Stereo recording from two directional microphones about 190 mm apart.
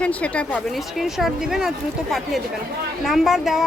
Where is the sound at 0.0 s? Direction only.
5° left (ahead or behind).